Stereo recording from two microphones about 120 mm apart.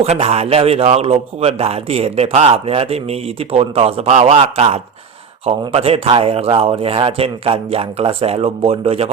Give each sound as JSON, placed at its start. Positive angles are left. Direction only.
{"t": 0.0, "sound": "a man's voice", "side_deg": -60}